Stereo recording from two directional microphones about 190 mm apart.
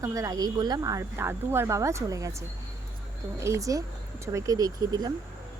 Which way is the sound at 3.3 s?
15° right (ahead or behind).